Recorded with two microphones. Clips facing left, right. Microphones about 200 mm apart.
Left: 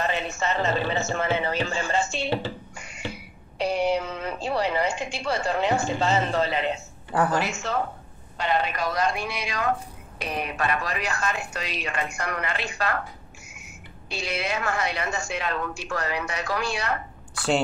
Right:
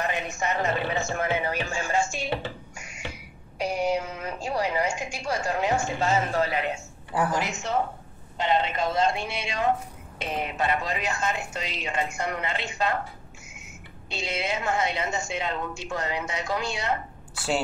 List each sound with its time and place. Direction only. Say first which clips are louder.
0.0 s a man's voice: left 2 dB; 15° right (ahead or behind)
3.1 s a sound: left 4 dB; 15° right (ahead or behind)
3.8 s a man's voice: left 2 dB; 10° right (ahead or behind)